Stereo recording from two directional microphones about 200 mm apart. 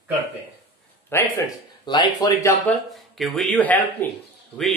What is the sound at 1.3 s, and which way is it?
Speech, 20° left (ahead or behind).